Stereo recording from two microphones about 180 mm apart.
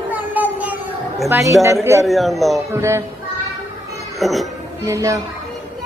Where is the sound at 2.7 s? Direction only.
15° right (ahead or behind).